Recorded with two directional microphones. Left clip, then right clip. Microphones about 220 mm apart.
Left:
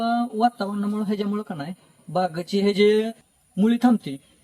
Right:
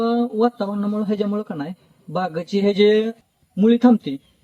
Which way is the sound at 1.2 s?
20° left (ahead or behind).